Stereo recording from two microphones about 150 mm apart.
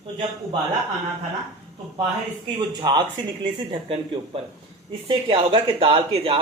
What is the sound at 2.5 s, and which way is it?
Speech, 30° right (ahead or behind).